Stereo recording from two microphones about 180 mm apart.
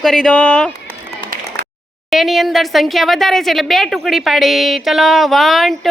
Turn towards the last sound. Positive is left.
turn(degrees=0)  # may be behind; listen again after turning